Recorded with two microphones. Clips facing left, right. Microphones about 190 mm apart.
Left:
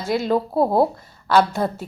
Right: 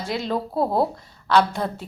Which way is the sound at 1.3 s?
5° left (ahead or behind).